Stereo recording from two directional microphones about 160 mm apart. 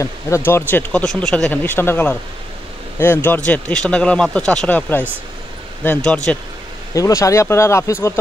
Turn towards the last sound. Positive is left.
turn(degrees=15)  # may be behind; listen again after turning